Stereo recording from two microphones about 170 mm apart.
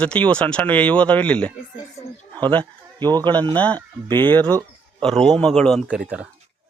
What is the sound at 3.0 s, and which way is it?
Speech, 25° right (ahead or behind).